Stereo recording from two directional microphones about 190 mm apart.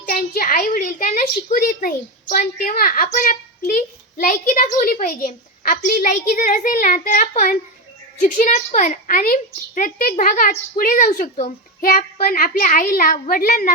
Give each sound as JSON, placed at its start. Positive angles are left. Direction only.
{"t": 0.0, "sound": "a woman's voice", "side_deg": 45}